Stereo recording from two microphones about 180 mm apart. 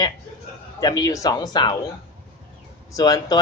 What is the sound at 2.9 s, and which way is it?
Speech, 20° left (ahead or behind).